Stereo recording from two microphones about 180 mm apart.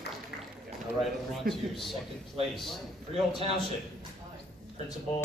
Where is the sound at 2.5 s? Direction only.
Centre (ahead or behind).